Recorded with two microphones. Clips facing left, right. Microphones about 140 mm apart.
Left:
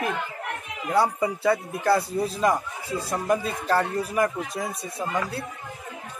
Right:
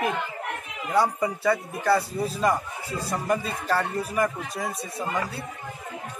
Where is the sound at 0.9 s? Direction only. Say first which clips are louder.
Left 1 dB; 10° left (ahead or behind).